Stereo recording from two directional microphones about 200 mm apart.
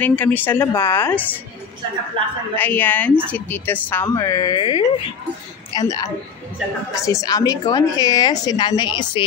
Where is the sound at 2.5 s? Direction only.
10° left (ahead or behind).